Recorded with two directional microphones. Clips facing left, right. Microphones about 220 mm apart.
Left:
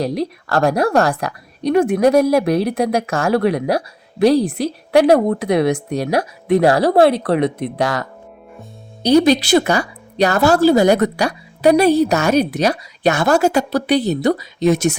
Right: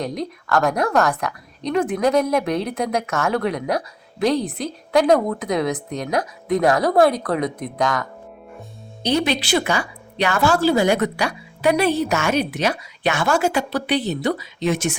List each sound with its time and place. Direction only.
0.0 s a woman's voice: 30° left (ahead or behind)
9.0 s a woman's voice: 40° left (ahead or behind)